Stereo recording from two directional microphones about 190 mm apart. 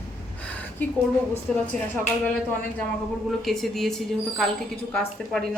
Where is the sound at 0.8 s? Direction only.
10° left (ahead or behind).